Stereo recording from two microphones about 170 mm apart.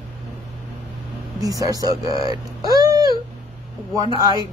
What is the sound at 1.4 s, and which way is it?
Speech, 20° right (ahead or behind).